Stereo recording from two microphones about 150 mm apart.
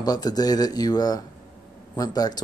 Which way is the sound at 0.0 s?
25° left (ahead or behind).